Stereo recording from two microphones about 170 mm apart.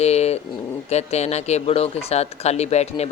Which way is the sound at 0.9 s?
40° left (ahead or behind).